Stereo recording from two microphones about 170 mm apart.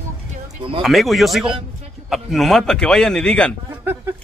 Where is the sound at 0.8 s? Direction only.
Centre (ahead or behind).